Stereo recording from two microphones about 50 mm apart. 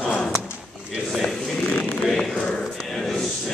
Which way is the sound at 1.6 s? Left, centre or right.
Left.